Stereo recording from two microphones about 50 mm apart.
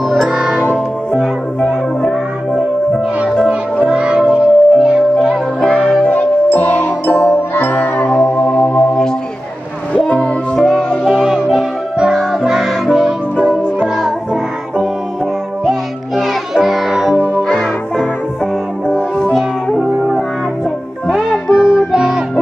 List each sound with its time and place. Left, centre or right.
0.3 s music: centre
2.0 s music: centre
3.9 s music: centre
5.8 s music: centre
6.0 s music: left
8.1 s music: centre
8.4 s music: left
9.9 s music: left
11.1 s music: centre
16.5 s music: centre
17.5 s music: centre
21.1 s music: centre